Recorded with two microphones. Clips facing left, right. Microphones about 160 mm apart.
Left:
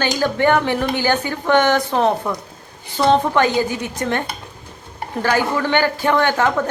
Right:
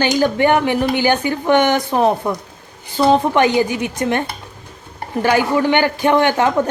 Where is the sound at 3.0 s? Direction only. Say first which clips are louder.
Right 2 dB; 25° right (ahead or behind).